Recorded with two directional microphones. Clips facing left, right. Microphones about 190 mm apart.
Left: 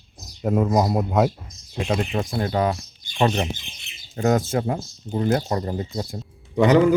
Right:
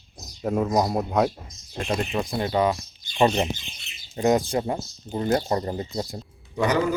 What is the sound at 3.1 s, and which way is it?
Speech, 10° right (ahead or behind).